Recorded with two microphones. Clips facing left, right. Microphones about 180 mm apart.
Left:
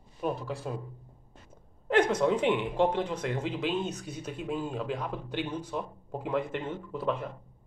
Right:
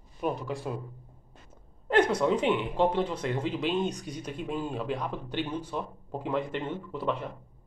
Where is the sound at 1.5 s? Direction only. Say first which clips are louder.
Right 1 dB; 10° left (ahead or behind).